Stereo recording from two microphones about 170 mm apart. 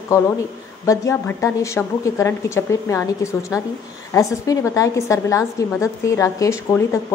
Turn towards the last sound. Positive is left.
turn(degrees=15)  # may be behind; listen again after turning